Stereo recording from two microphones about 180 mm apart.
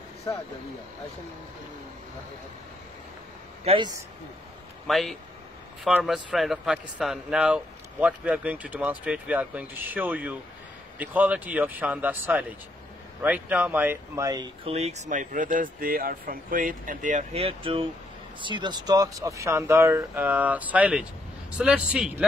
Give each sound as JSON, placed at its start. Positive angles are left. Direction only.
{"t": 3.6, "sound": "speech", "side_deg": -30}
{"t": 4.8, "sound": "speech", "side_deg": 0}